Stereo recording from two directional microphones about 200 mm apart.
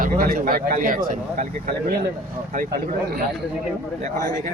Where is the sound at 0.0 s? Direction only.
45° right (ahead or behind).